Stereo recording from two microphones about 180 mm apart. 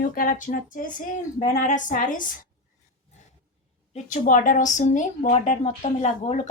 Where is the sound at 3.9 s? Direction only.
45° left (ahead or behind).